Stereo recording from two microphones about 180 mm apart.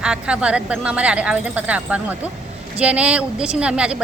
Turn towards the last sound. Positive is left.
turn(degrees=-5)  # may be behind; listen again after turning